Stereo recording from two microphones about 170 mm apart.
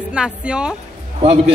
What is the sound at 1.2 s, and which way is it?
Speech, 35° right (ahead or behind).